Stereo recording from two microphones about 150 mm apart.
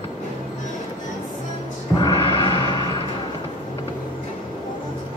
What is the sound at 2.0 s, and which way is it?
Gong, 30° left (ahead or behind).